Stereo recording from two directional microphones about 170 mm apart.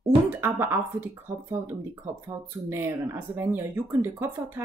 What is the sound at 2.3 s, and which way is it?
Speech, 15° right (ahead or behind).